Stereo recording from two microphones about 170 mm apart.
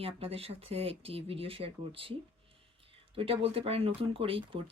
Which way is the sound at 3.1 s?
35° right (ahead or behind).